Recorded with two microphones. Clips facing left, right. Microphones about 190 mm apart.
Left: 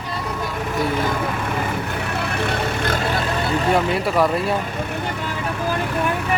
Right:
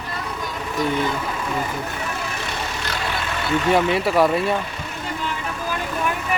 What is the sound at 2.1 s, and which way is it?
Vehicle, 60° left (ahead or behind).